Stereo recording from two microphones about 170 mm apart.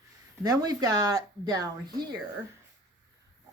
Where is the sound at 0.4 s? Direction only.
20° right (ahead or behind).